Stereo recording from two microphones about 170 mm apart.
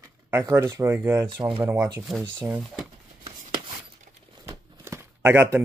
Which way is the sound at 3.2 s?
30° right (ahead or behind).